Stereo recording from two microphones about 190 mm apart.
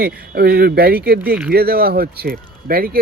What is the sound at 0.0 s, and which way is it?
Speech, 55° right (ahead or behind).